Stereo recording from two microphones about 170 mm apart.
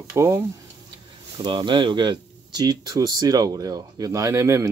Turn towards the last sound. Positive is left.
turn(degrees=-15)  # may be behind; listen again after turning